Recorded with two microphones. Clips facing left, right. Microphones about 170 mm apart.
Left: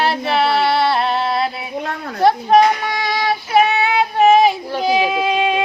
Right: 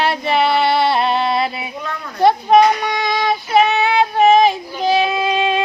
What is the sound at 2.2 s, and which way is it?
Child singing, centre (ahead or behind).